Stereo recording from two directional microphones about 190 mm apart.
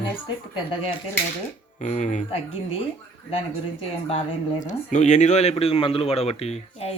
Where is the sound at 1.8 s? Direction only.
40° left (ahead or behind).